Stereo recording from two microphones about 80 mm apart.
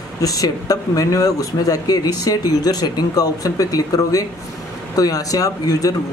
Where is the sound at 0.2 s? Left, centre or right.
Left.